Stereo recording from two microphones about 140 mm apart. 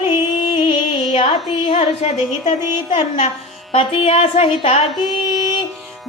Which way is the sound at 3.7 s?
45° left (ahead or behind).